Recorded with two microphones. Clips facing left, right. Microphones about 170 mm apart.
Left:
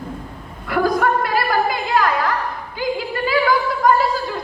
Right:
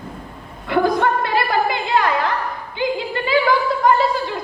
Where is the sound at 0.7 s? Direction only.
25° right (ahead or behind).